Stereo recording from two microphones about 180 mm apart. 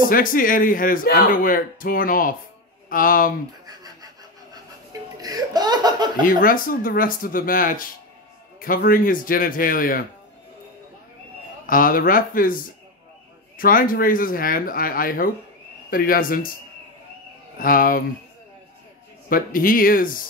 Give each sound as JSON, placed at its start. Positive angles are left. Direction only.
{"t": 0.1, "sound": "speech", "side_deg": 50}
{"t": 3.6, "sound": "a sound", "side_deg": -20}
{"t": 5.2, "sound": "speech", "side_deg": -20}
{"t": 6.2, "sound": "speech", "side_deg": 50}
{"t": 11.6, "sound": "speech", "side_deg": 50}
{"t": 17.6, "sound": "speech", "side_deg": 50}
{"t": 19.2, "sound": "speech", "side_deg": 50}